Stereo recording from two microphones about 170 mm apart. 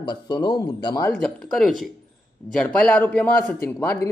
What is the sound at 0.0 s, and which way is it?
Speech, 25° left (ahead or behind).